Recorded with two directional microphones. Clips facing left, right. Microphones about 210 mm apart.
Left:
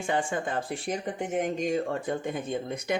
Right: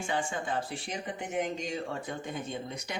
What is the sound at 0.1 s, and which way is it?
Speech, 50° left (ahead or behind).